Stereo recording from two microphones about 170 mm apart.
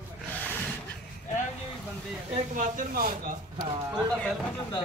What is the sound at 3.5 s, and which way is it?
Speech, 25° right (ahead or behind).